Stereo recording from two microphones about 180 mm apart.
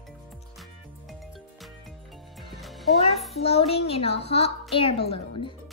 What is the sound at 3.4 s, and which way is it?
A woman's voice, 35° left (ahead or behind).